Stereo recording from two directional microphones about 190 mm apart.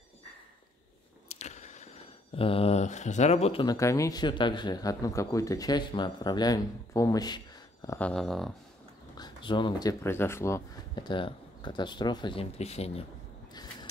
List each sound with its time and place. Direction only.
1.3 s a sound: 35° left (ahead or behind)
3.6 s speech: 15° left (ahead or behind)
8.1 s speech: centre (ahead or behind)
9.1 s speech: 25° left (ahead or behind)